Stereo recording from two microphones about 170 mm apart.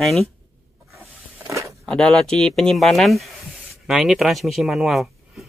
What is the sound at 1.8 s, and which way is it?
Speech, centre (ahead or behind).